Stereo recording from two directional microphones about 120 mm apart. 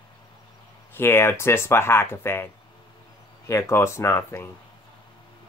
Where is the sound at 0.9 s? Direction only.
20° left (ahead or behind).